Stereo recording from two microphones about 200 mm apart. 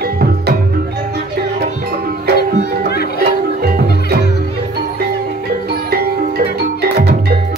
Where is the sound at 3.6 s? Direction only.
50° right (ahead or behind).